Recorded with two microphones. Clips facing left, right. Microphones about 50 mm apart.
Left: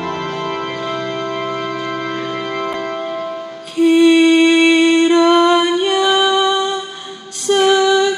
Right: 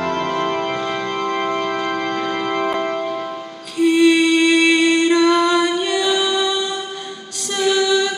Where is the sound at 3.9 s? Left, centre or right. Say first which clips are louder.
Left 4 dB; centre.